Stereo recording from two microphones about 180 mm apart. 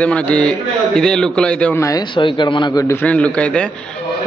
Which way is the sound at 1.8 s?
25° left (ahead or behind).